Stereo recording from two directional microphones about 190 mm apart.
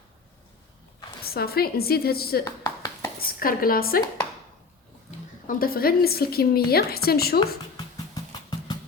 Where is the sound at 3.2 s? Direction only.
50° left (ahead or behind).